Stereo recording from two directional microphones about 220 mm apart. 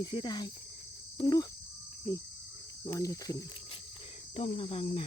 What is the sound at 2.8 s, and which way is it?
Speech, 15° left (ahead or behind).